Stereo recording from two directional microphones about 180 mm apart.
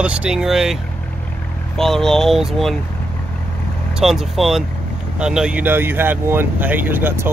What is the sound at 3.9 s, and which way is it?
Speech, centre (ahead or behind).